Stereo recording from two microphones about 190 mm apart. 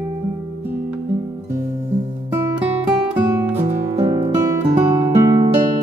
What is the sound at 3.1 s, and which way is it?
Music, 10° right (ahead or behind).